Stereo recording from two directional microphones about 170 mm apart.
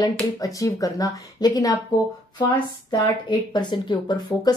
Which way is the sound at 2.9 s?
25° left (ahead or behind).